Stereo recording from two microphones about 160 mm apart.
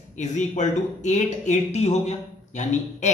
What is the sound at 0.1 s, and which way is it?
Speech, 50° left (ahead or behind).